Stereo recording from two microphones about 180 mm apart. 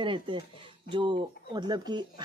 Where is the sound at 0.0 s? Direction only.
30° right (ahead or behind).